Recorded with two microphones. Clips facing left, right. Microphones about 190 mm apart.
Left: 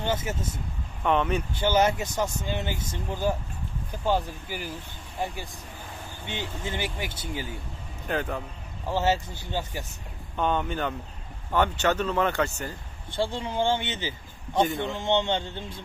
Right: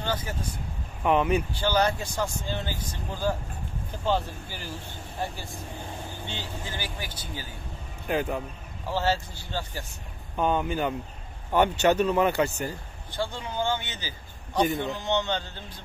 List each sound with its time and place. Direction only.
0.0 s speech: 25° left (ahead or behind)
1.0 s speech: 10° right (ahead or behind)
1.5 s speech: 20° left (ahead or behind)
8.1 s speech: 10° right (ahead or behind)
8.8 s speech: 20° left (ahead or behind)
10.3 s speech: 5° right (ahead or behind)
13.1 s speech: 30° left (ahead or behind)